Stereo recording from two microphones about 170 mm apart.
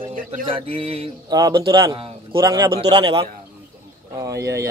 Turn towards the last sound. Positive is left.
turn(degrees=-20)  # may be behind; listen again after turning